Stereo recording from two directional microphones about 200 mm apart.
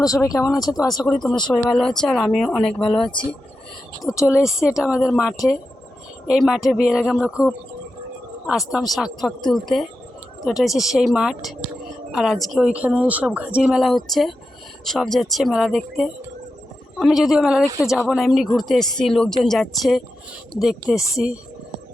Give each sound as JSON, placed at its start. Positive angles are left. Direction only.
{"t": 0.0, "sound": "speech", "side_deg": 15}
{"t": 1.0, "sound": "a woman's voice", "side_deg": 5}
{"t": 4.1, "sound": "speech", "side_deg": 15}
{"t": 4.4, "sound": "a woman's voice", "side_deg": -5}